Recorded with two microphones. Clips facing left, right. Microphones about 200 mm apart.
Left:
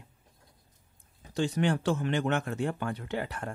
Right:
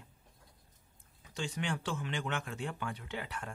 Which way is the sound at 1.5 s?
45° left (ahead or behind).